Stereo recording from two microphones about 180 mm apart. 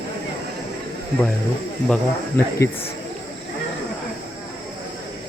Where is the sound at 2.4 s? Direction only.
15° left (ahead or behind).